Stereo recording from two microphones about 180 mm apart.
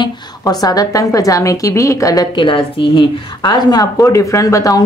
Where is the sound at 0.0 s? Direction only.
20° left (ahead or behind).